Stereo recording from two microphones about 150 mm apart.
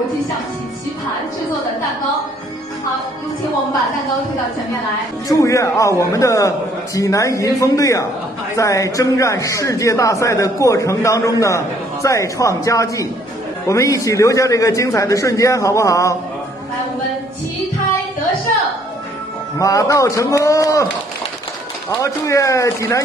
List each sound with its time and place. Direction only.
5.3 s speech: 20° left (ahead or behind)
19.6 s speech: 20° left (ahead or behind)
22.0 s speech: 20° left (ahead or behind)